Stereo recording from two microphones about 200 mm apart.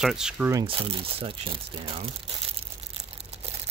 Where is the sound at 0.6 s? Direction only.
25° right (ahead or behind).